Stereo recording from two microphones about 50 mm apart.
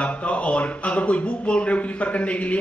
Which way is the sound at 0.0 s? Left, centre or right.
Left.